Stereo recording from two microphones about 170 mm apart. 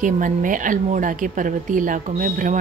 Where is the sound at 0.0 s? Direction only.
50° right (ahead or behind).